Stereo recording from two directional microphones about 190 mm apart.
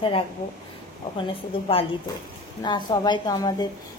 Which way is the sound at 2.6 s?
25° left (ahead or behind).